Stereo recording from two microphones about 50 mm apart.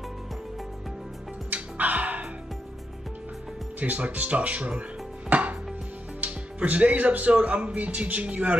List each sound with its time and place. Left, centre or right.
1.5 s music: right
3.8 s speech: right
5.3 s chopping: right
6.2 s speech: right